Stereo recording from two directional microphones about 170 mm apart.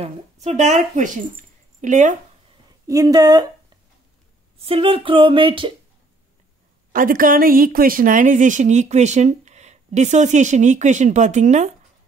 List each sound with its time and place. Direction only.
0.0 s speech: 40° right (ahead or behind)
2.9 s speech: 20° right (ahead or behind)
4.6 s speech: 35° right (ahead or behind)
6.9 s speech: 55° right (ahead or behind)